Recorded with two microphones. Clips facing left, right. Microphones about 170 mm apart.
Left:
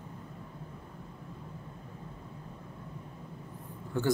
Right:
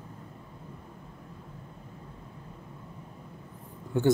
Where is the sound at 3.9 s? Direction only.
15° right (ahead or behind).